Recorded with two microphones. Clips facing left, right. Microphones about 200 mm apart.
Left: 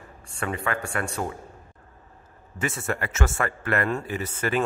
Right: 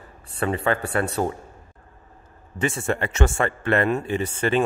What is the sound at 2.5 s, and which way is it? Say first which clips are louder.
A man's voice: right 4 dB; 30° right (ahead or behind).